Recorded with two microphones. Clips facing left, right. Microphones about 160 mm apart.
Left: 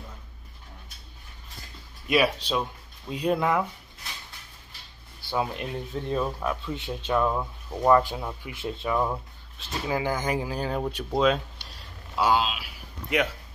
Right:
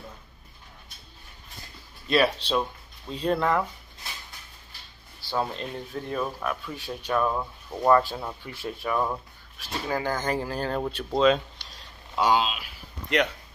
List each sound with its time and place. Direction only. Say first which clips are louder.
2.0 s speech: even; 10° left (ahead or behind)
5.3 s speech: left 1 dB; 15° left (ahead or behind)
7.3 s speech: left 1 dB; centre (ahead or behind)
7.9 s speech: even; 15° left (ahead or behind)
12.2 s a sound: even; centre (ahead or behind)